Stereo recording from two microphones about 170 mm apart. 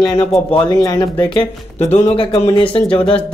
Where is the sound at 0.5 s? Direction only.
30° left (ahead or behind).